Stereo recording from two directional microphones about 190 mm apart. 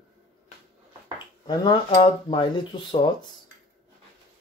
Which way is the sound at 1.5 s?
25° left (ahead or behind).